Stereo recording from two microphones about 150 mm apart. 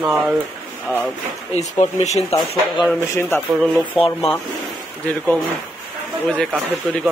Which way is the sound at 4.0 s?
40° left (ahead or behind).